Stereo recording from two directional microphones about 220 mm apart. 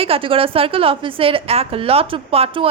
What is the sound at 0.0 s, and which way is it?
A woman's voice, 25° right (ahead or behind).